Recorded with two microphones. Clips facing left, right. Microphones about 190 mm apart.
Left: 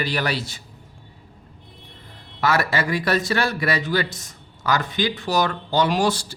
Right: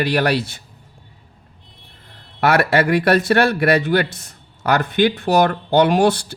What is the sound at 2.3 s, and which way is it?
Speech, 65° right (ahead or behind).